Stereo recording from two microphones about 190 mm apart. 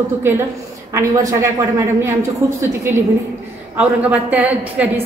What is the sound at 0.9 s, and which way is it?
Speech, 15° right (ahead or behind).